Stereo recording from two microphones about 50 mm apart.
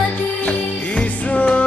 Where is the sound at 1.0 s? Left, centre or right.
Left.